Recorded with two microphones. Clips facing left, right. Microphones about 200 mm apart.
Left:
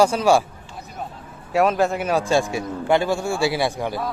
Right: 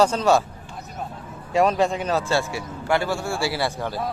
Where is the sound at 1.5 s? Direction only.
5° left (ahead or behind).